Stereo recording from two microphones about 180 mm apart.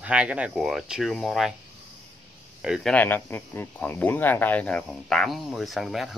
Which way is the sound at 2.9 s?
10° left (ahead or behind).